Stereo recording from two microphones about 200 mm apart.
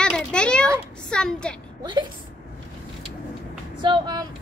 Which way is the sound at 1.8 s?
20° right (ahead or behind).